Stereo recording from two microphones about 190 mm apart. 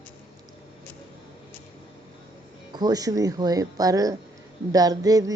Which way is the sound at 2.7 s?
20° right (ahead or behind).